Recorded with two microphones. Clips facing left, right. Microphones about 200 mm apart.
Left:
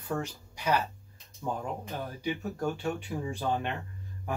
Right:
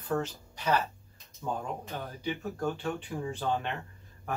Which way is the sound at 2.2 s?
10° left (ahead or behind).